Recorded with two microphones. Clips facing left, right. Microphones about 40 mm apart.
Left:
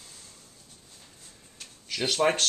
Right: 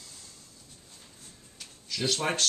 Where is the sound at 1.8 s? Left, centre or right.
Left.